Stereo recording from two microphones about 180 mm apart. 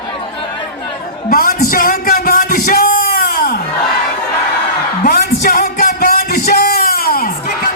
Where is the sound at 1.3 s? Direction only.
55° left (ahead or behind).